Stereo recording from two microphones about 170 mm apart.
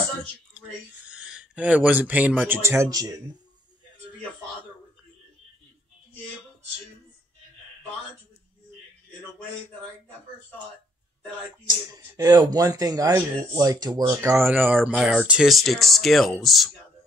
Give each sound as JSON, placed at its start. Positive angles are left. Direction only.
{"t": 0.6, "sound": "a sound", "side_deg": -5}
{"t": 2.4, "sound": "speech", "side_deg": -15}
{"t": 11.7, "sound": "speech", "side_deg": -20}